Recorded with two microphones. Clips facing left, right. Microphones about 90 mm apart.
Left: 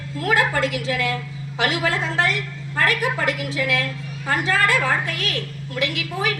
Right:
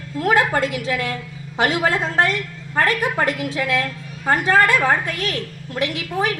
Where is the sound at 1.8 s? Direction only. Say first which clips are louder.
Right 3 dB; 50° right (ahead or behind).